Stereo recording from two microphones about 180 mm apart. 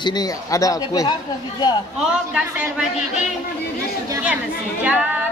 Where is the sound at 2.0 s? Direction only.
5° right (ahead or behind).